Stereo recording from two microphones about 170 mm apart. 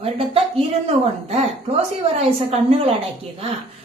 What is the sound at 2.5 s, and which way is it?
Speech, 35° right (ahead or behind).